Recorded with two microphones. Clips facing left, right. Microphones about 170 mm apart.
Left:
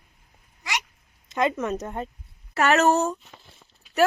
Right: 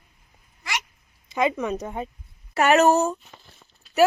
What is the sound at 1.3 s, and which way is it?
Speech, 5° right (ahead or behind).